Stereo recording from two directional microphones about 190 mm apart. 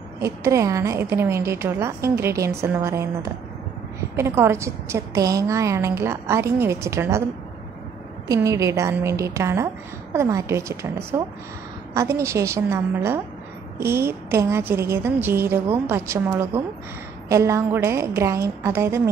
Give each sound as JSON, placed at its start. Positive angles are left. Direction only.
{"t": 0.2, "sound": "a woman's voice", "side_deg": -15}
{"t": 8.3, "sound": "a woman's voice", "side_deg": -15}